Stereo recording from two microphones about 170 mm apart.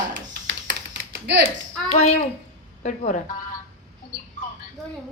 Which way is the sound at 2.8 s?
45° left (ahead or behind).